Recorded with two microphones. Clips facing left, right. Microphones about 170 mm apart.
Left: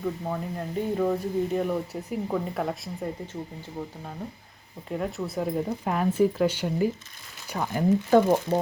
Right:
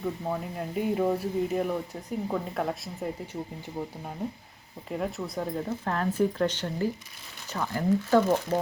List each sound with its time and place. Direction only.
0.0 s speech: 5° right (ahead or behind)
4.9 s speech: centre (ahead or behind); by 8.5 s 15° left (ahead or behind)